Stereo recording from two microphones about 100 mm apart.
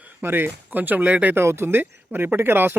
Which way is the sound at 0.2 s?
20° right (ahead or behind).